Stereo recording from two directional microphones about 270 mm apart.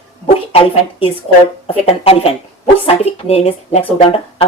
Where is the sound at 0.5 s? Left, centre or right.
Left.